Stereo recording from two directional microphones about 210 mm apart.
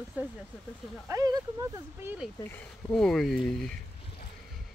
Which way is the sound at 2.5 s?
5° left (ahead or behind).